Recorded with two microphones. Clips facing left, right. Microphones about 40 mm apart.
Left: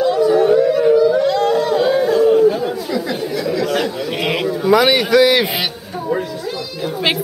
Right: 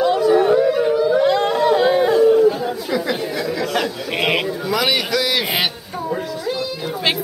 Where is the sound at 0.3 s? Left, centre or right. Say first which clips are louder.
Left 1 dB; centre.